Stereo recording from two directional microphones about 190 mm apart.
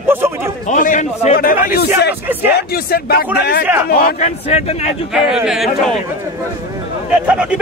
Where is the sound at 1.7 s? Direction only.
55° left (ahead or behind).